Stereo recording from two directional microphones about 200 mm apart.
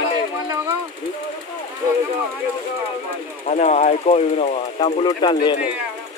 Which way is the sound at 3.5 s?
35° left (ahead or behind).